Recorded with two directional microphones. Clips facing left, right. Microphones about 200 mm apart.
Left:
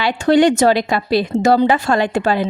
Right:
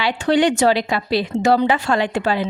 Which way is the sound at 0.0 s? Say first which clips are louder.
Left 4 dB; 45° left (ahead or behind).